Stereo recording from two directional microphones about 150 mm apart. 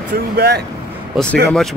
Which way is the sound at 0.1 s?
90° right.